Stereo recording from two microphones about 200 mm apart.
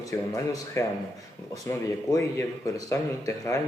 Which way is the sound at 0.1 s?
15° left (ahead or behind).